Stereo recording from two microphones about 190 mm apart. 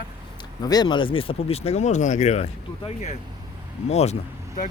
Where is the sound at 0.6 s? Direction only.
20° left (ahead or behind); by 4.7 s 35° left (ahead or behind).